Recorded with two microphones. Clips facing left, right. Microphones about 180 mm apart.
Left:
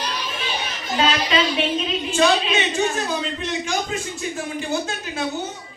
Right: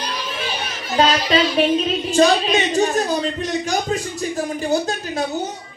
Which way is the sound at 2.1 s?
35° right (ahead or behind).